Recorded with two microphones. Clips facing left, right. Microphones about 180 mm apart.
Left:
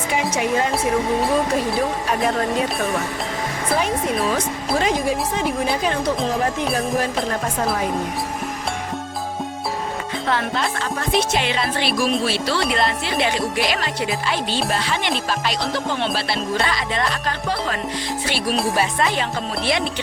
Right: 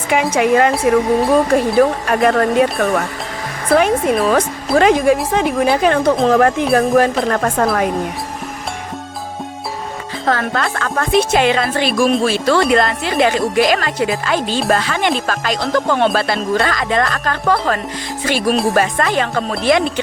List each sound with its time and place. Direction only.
0.1 s music: 65° right (ahead or behind)
1.3 s speech: 50° right (ahead or behind)
1.8 s speech: 65° right (ahead or behind)
6.2 s music: 70° right (ahead or behind)
10.2 s speech: 45° right (ahead or behind)